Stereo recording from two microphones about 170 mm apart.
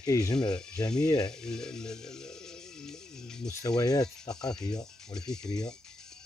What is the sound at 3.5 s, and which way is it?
Speech, 20° left (ahead or behind).